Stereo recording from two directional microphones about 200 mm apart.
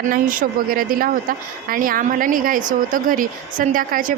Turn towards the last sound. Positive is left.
turn(degrees=-45)  # may be behind; listen again after turning